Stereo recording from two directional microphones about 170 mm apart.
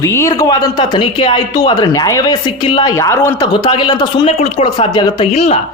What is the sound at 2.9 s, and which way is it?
Speech, 15° left (ahead or behind).